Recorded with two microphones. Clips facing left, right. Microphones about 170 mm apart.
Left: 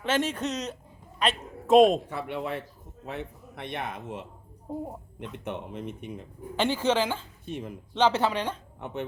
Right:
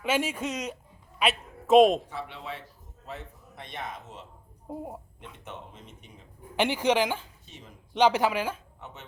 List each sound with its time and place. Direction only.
0.0 s a woman's voice: 10° right (ahead or behind)
2.0 s a man's voice: 55° left (ahead or behind)
5.5 s a man's voice: 60° left (ahead or behind)
6.6 s speech: 15° right (ahead or behind)
7.4 s speech: 55° left (ahead or behind)
7.9 s speech: 15° right (ahead or behind)
8.8 s a man's voice: 60° left (ahead or behind)